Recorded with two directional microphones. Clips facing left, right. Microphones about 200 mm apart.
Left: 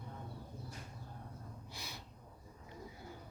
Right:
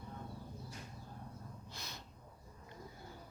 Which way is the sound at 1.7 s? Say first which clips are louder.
Left 2 dB; 10° left (ahead or behind).